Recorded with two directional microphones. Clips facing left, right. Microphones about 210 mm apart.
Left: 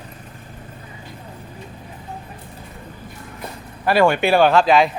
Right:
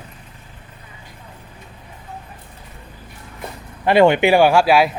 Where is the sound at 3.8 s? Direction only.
20° right (ahead or behind).